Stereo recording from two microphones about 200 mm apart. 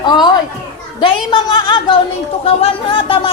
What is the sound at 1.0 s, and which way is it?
A woman's voice, 25° left (ahead or behind).